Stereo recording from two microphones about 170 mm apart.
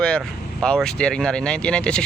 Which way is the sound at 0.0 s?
5° left (ahead or behind).